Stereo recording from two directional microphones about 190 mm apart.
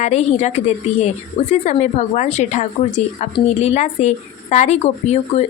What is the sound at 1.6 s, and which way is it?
Speech, 40° left (ahead or behind).